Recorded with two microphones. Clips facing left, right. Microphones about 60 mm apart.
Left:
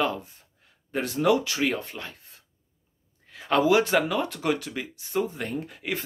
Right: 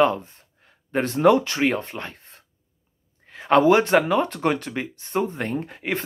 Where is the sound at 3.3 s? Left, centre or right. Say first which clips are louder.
Right 7 dB; right.